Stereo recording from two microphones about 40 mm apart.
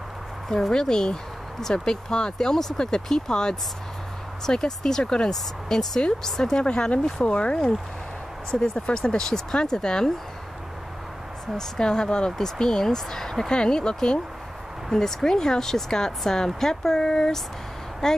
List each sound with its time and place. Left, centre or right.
0.5 s speech: centre
6.6 s speech: left
8.5 s speech: centre
11.5 s speech: centre